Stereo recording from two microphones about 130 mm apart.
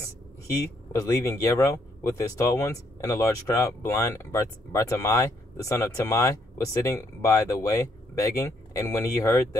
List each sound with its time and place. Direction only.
0.5 s speech: 25° left (ahead or behind)